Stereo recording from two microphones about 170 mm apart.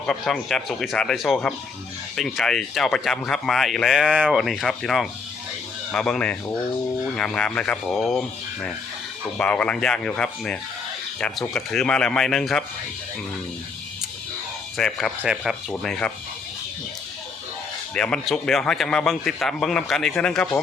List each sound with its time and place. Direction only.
0.0 s speech: 5° left (ahead or behind)
9.4 s speech: 5° left (ahead or behind)
14.8 s speech: 5° left (ahead or behind)
17.9 s speech: 5° left (ahead or behind)